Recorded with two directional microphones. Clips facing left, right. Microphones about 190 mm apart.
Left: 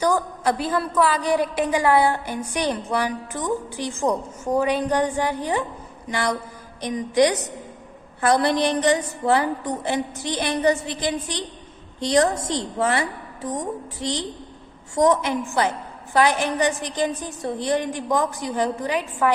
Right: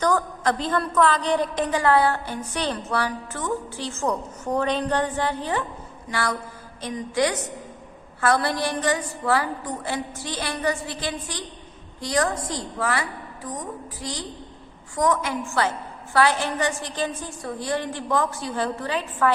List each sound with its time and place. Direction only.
0.0 s a woman's voice: 10° left (ahead or behind)